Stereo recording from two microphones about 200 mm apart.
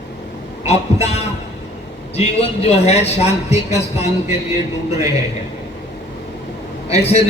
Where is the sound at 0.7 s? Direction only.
30° left (ahead or behind).